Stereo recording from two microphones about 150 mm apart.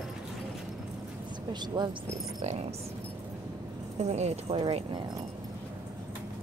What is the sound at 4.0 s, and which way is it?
Speech, 45° right (ahead or behind).